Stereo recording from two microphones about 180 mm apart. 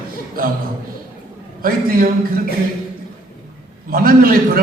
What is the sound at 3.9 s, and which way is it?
Speech, 55° right (ahead or behind).